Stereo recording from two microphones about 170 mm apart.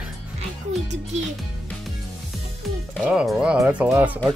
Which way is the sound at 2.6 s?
Centre (ahead or behind).